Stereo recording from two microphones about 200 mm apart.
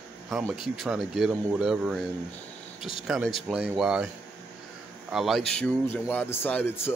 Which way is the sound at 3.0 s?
Centre (ahead or behind).